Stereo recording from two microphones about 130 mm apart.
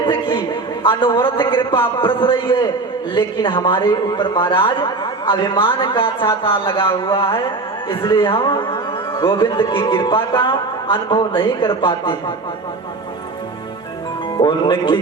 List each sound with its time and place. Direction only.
0.0 s a man's voice: 40° left (ahead or behind)
14.3 s a man's voice: 35° left (ahead or behind)